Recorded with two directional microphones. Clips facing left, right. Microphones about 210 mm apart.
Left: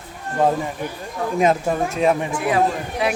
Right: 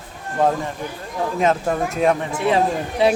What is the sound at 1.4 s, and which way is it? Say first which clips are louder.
Speech: left 1 dB; 10° left (ahead or behind).